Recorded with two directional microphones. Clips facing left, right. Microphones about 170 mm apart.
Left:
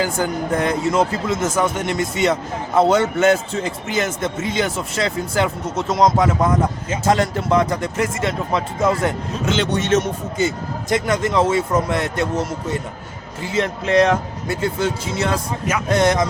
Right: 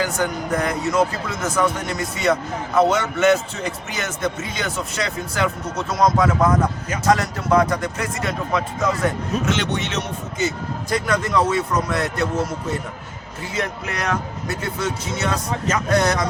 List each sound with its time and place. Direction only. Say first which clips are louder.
0.0 s a man's voice: left 2 dB; 30° left (ahead or behind)
9.7 s a man's voice: left 8 dB; 45° left (ahead or behind)
10.8 s a man's voice: left 3 dB; 20° left (ahead or behind)
13.4 s a man's voice: left 5 dB; 25° left (ahead or behind)